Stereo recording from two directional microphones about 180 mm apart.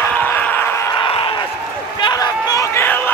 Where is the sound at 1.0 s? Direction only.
30° left (ahead or behind); by 3.0 s 10° left (ahead or behind).